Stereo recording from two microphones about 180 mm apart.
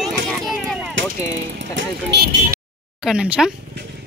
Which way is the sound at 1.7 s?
65° right (ahead or behind).